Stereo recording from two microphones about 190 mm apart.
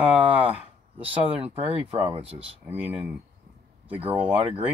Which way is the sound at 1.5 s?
10° right (ahead or behind).